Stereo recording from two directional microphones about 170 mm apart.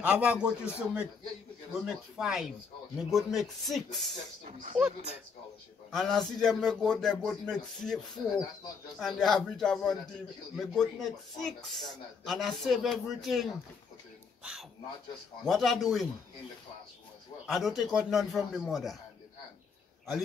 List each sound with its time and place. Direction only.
0.0 s a man's voice: 10° right (ahead or behind)
4.5 s speech: 50° right (ahead or behind)
5.9 s speech: 5° left (ahead or behind)
9.0 s speech: centre (ahead or behind)
14.4 s a sound: 5° right (ahead or behind)
15.4 s speech: centre (ahead or behind)
17.5 s speech: centre (ahead or behind)